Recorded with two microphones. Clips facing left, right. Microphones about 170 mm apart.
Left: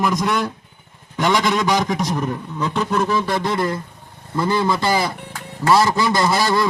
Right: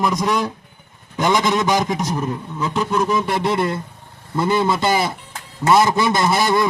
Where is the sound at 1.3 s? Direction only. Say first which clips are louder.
Right 1 dB; 20° right (ahead or behind).